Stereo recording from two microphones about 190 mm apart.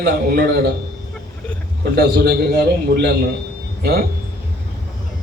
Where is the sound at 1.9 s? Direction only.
55° right (ahead or behind).